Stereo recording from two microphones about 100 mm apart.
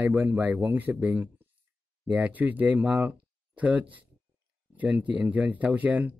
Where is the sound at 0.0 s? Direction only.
20° right (ahead or behind).